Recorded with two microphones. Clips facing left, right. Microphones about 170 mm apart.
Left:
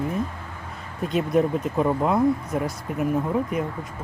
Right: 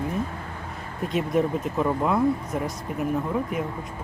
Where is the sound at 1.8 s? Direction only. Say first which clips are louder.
Left 2 dB; 10° left (ahead or behind).